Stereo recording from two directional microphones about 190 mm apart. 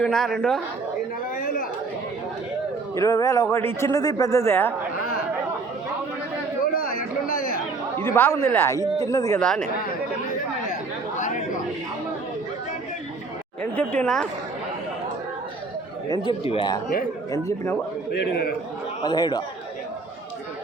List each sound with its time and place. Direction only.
0.0 s a man's voice: centre (ahead or behind)
2.9 s speech: 15° left (ahead or behind)
7.3 s chatter: 45° left (ahead or behind)
7.9 s speech: 10° left (ahead or behind)
9.4 s a man's voice: 5° left (ahead or behind)
11.2 s chatter: 40° left (ahead or behind)
13.6 s speech: 5° left (ahead or behind)
16.2 s speech: 30° left (ahead or behind)
18.1 s a man's voice: 55° left (ahead or behind)
19.0 s speech: 20° left (ahead or behind)